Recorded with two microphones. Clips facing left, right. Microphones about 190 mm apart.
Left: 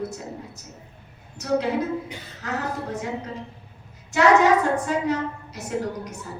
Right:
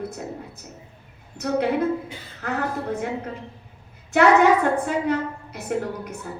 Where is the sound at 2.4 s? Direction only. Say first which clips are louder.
Right 2 dB; 55° right (ahead or behind).